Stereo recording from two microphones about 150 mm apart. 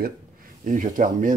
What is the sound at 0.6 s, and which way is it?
Speech, 60° right (ahead or behind).